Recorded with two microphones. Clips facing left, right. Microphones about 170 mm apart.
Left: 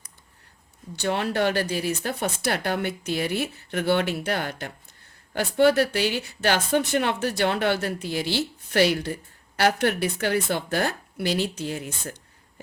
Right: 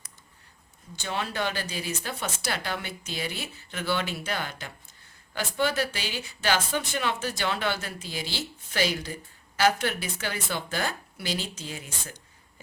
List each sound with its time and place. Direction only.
0.9 s speech: 60° left (ahead or behind)